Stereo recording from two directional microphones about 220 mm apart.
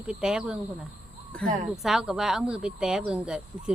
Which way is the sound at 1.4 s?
35° right (ahead or behind).